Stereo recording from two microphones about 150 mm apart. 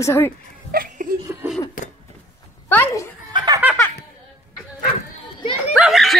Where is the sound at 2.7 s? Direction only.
15° left (ahead or behind).